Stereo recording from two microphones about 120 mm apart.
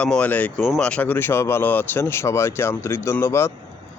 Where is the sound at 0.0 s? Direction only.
10° left (ahead or behind).